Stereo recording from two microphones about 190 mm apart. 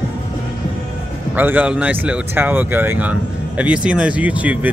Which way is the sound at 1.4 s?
10° right (ahead or behind).